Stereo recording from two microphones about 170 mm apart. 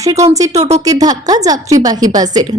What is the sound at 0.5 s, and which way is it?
Speech, 40° right (ahead or behind).